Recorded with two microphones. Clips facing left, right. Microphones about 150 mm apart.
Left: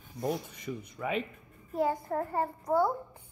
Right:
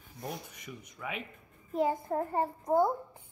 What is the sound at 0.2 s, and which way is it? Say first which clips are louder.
Speech: left 8 dB; 30° left (ahead or behind).